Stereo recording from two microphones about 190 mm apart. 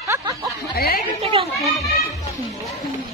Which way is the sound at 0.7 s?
55° left (ahead or behind).